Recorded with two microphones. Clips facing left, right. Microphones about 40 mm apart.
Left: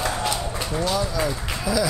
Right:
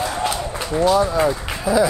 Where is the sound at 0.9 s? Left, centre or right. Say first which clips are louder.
Right 7 dB; right.